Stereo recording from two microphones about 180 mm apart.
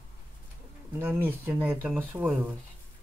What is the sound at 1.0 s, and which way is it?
Speech, 10° right (ahead or behind).